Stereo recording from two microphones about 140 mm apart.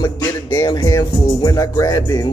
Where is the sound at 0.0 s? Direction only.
30° left (ahead or behind).